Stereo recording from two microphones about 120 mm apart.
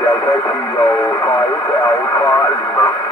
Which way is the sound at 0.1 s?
15° left (ahead or behind).